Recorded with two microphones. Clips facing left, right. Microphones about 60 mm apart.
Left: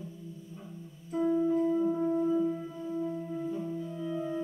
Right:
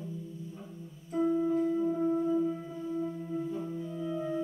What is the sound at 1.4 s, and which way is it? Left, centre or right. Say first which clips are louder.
Music: left 1 dB; centre.